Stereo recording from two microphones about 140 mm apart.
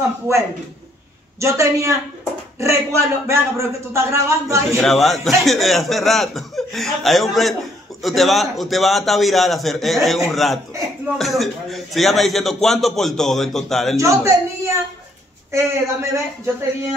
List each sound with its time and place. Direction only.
1.4 s a man's voice: 20° right (ahead or behind)
4.7 s speech: centre (ahead or behind)
13.9 s a man's voice: 20° right (ahead or behind)